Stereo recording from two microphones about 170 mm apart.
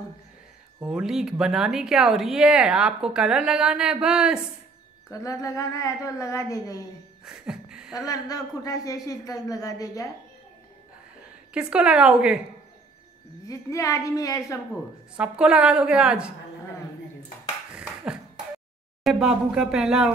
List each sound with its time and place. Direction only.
0.8 s speech: 5° right (ahead or behind)
5.1 s a woman's voice: 20° left (ahead or behind)
7.2 s a sound: 5° right (ahead or behind)
7.9 s a woman's voice: 20° left (ahead or behind)
11.5 s speech: 5° right (ahead or behind)
13.5 s a woman's voice: 20° left (ahead or behind)
15.1 s speech: 5° right (ahead or behind)
17.7 s a sound: 5° right (ahead or behind)
19.0 s speech: 5° right (ahead or behind)